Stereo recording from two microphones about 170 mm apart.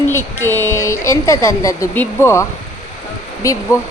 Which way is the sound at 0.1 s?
15° left (ahead or behind).